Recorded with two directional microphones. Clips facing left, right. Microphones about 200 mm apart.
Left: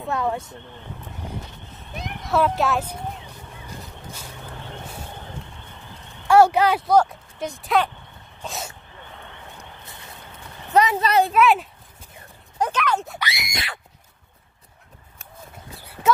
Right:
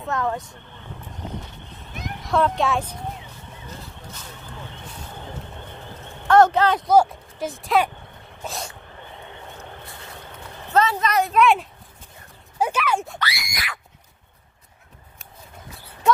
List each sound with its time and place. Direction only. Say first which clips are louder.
0.0 s speech: left 1 dB; 15° left (ahead or behind)
2.3 s speech: even; 5° left (ahead or behind)
6.2 s speech: even; 10° left (ahead or behind)
6.9 s speech: right 1 dB; centre (ahead or behind)
10.7 s speech: left 1 dB; 15° left (ahead or behind)
11.0 s speech: left 3 dB; 30° left (ahead or behind)
11.3 s speech: even; 5° left (ahead or behind)
13.2 s screaming: even; 20° left (ahead or behind)